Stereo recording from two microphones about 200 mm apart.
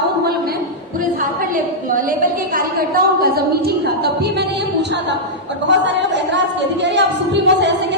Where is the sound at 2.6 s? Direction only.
50° right (ahead or behind).